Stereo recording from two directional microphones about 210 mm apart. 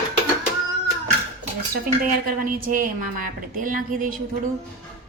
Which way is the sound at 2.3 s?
40° right (ahead or behind).